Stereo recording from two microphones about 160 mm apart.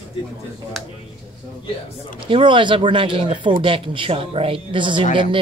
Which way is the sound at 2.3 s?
30° right (ahead or behind).